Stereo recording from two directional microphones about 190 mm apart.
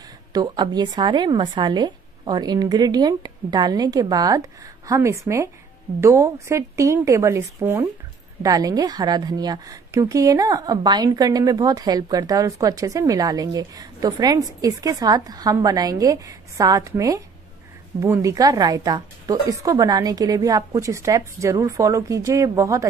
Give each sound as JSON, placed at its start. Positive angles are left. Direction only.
{"t": 0.3, "sound": "a woman's voice", "side_deg": -20}